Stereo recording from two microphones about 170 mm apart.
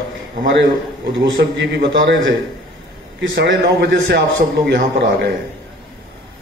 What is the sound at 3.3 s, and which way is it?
A man's voice, 70° right (ahead or behind).